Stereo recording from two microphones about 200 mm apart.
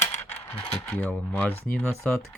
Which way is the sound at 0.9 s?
5° left (ahead or behind).